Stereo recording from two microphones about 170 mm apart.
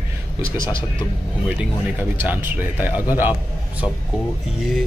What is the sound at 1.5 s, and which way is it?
Speech, 10° right (ahead or behind).